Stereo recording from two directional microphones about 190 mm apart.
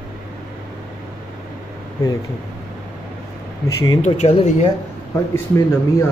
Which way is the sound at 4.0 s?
35° left (ahead or behind).